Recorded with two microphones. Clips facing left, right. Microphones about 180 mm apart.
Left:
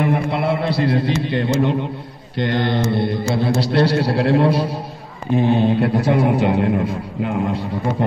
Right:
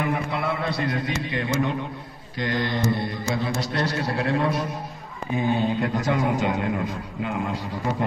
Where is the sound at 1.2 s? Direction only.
70° left (ahead or behind).